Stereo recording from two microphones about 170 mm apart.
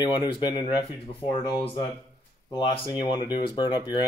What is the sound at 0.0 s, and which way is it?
Speech, 25° left (ahead or behind).